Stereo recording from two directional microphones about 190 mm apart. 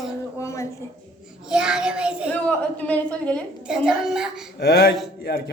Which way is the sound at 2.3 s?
5° left (ahead or behind).